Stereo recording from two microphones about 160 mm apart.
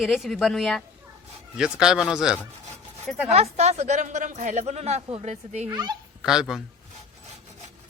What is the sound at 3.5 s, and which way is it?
Speech, 45° right (ahead or behind).